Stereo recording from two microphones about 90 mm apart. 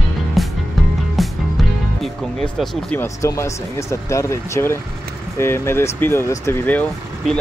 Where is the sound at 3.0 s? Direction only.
35° left (ahead or behind).